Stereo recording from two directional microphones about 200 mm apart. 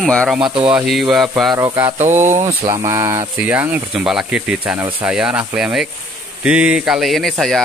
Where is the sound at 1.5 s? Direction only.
15° right (ahead or behind).